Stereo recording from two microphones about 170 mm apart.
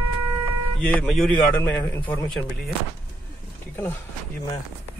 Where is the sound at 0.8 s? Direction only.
5° left (ahead or behind).